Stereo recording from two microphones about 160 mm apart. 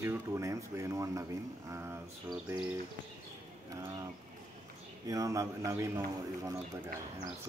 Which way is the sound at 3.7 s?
20° right (ahead or behind).